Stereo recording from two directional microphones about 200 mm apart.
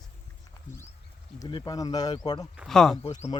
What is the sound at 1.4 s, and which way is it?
Speech, 20° left (ahead or behind).